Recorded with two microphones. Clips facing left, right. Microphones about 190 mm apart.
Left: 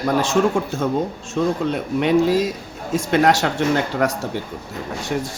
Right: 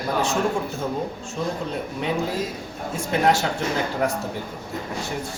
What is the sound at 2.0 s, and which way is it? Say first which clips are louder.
A man's voice: left 10 dB; 75° left (ahead or behind).